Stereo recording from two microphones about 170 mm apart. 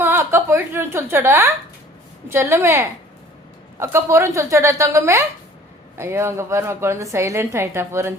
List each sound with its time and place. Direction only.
0.0 s a woman's voice: 15° right (ahead or behind)